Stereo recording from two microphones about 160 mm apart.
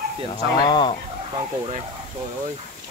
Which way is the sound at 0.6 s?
30° left (ahead or behind).